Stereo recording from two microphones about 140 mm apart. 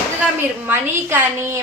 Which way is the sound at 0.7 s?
15° right (ahead or behind).